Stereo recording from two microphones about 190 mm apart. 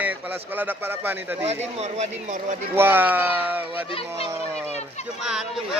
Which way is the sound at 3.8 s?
30° left (ahead or behind).